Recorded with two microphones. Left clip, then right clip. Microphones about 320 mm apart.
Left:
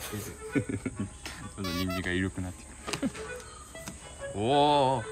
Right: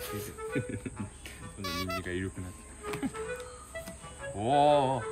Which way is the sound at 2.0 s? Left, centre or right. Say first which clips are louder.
Left 5 dB; centre.